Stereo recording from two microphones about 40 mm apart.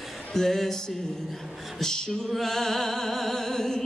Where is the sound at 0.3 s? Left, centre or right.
Centre.